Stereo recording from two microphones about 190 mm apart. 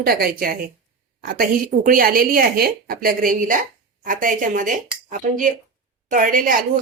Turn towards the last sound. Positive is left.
turn(degrees=-45)  # may be behind; listen again after turning